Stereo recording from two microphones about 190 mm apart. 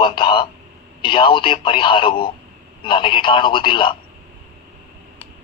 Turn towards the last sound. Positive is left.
turn(degrees=25)  # may be behind; listen again after turning